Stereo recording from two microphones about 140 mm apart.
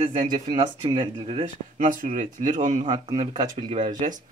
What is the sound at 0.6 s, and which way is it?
Speech, 35° right (ahead or behind).